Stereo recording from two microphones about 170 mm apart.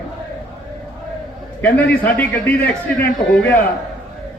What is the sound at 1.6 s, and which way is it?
Speech, 10° left (ahead or behind).